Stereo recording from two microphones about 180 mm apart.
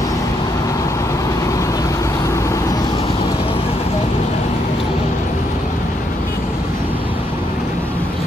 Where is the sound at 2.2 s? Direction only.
15° left (ahead or behind).